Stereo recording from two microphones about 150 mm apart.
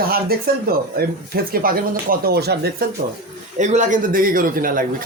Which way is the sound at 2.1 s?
90° right.